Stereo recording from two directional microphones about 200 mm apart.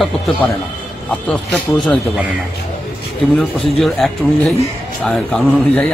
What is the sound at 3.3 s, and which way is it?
Speech, 10° left (ahead or behind).